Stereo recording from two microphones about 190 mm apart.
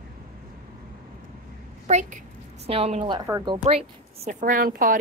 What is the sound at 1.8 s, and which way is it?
A woman's voice, 35° right (ahead or behind).